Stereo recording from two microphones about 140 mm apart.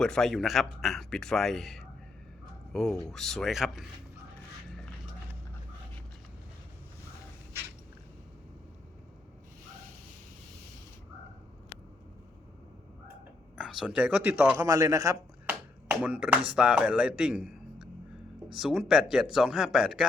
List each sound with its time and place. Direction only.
0.0 s speech: 5° left (ahead or behind)
13.6 s speech: 5° right (ahead or behind)
14.5 s a man's voice: 25° right (ahead or behind)
15.4 s speech: 10° right (ahead or behind)